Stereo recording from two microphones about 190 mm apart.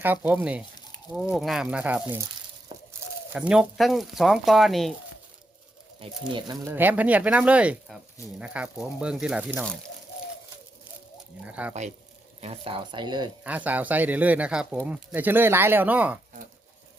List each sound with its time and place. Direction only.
0.0 s speech: 10° right (ahead or behind)
2.7 s a sound: 25° right (ahead or behind)
3.3 s speech: 5° right (ahead or behind)
6.0 s speech: 25° right (ahead or behind); by 9.6 s 5° right (ahead or behind)
11.4 s speech: 5° right (ahead or behind)
12.4 s speech: 30° right (ahead or behind)
13.4 s speech: 10° right (ahead or behind)